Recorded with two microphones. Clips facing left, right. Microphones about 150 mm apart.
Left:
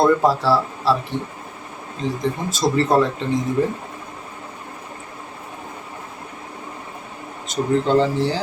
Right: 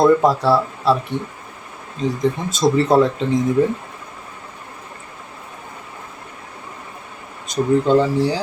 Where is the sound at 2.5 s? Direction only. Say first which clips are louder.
Right 3 dB; 20° right (ahead or behind).